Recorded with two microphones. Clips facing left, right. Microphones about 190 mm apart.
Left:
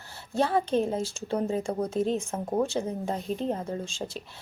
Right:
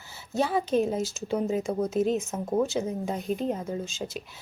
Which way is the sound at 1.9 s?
30° left (ahead or behind).